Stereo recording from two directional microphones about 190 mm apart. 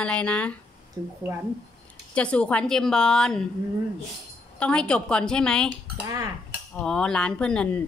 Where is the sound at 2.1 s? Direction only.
5° left (ahead or behind).